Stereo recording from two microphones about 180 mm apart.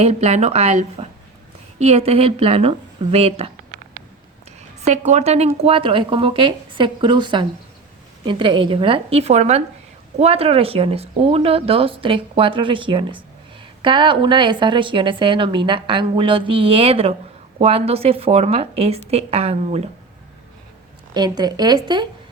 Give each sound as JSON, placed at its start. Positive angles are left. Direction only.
{"t": 0.0, "sound": "a woman's voice", "side_deg": -40}
{"t": 4.8, "sound": "a woman's voice", "side_deg": -40}
{"t": 21.1, "sound": "a woman's voice", "side_deg": -25}